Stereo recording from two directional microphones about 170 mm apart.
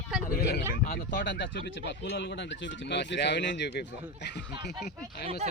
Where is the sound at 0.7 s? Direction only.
70° left (ahead or behind).